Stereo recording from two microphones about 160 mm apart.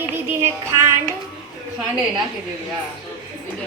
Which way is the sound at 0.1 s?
15° right (ahead or behind).